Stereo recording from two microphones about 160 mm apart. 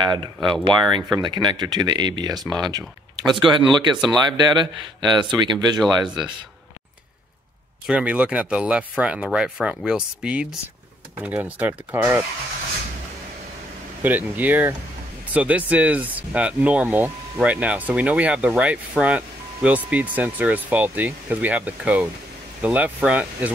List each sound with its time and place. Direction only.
0.1 s speech: 30° right (ahead or behind)
4.0 s speech: centre (ahead or behind)
4.4 s speech: 30° right (ahead or behind)
7.8 s speech: 10° right (ahead or behind)
14.0 s speech: 10° right (ahead or behind)